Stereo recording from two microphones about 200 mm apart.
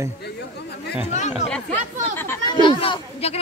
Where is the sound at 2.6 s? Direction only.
25° left (ahead or behind).